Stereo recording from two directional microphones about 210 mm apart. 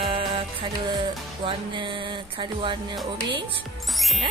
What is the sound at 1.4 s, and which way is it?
Speech, 25° right (ahead or behind).